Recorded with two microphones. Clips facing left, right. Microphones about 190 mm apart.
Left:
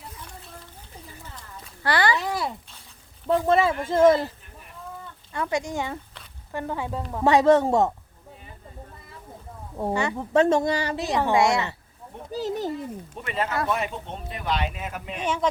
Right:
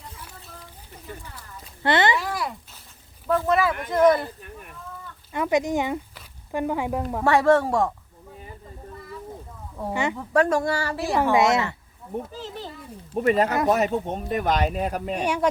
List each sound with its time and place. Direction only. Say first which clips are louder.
1.8 s speech: right 2 dB; 20° right (ahead or behind)
2.1 s speech: even; 25° left (ahead or behind)
5.3 s speech: right 5 dB; 20° right (ahead or behind)
7.3 s speech: left 1 dB; 20° left (ahead or behind)
9.9 s speech: right 1 dB; 15° right (ahead or behind)
10.2 s speech: left 2 dB; 25° left (ahead or behind)
11.3 s speech: right 1 dB; 20° right (ahead or behind)
12.3 s a child's voice: left 8 dB; 40° left (ahead or behind)
13.1 s speech: right 8 dB; 40° right (ahead or behind)